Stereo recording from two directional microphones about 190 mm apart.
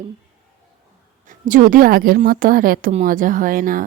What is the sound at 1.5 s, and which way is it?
A woman's voice, 45° right (ahead or behind).